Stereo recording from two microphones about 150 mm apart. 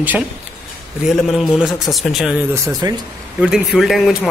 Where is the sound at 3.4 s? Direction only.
5° right (ahead or behind).